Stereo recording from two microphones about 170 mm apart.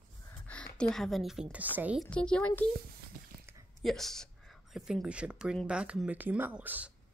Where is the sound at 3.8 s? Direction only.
Centre (ahead or behind).